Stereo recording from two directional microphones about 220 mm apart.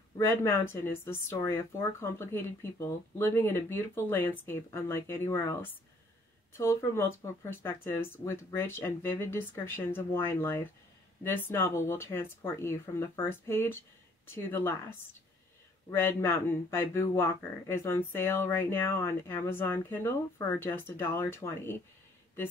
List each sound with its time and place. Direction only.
0.2 s speech: 10° left (ahead or behind)
15.9 s speech: 10° left (ahead or behind)